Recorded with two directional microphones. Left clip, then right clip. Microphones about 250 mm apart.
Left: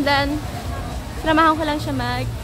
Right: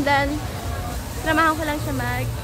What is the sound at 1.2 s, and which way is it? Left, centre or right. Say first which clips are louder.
Speech: left 3 dB; left.